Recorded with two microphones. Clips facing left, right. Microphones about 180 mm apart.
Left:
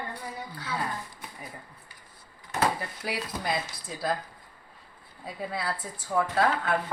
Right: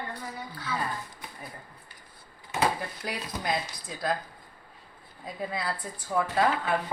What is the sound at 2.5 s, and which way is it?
Speech, centre (ahead or behind).